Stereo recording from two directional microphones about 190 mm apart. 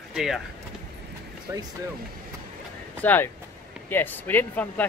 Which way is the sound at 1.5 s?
20° right (ahead or behind).